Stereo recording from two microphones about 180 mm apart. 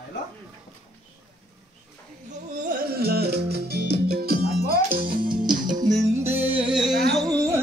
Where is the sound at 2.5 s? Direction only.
50° right (ahead or behind).